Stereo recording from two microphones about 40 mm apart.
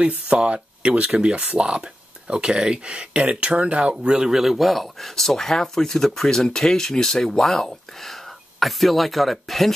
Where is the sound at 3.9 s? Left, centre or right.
Centre.